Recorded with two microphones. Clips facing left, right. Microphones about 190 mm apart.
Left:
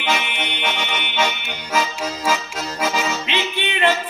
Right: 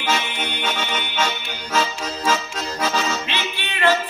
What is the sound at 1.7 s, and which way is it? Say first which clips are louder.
Accordion: left 1 dB; 10° left (ahead or behind).